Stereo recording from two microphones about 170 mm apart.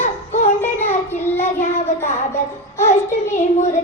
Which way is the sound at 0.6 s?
10° left (ahead or behind).